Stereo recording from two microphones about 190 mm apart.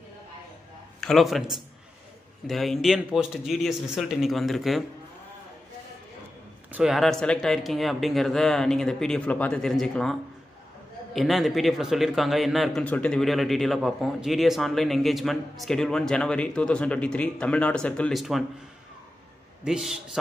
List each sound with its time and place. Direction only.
1.0 s a man's voice: centre (ahead or behind)
6.7 s a man's voice: centre (ahead or behind)
11.1 s a man's voice: centre (ahead or behind)
19.6 s a man's voice: 5° right (ahead or behind)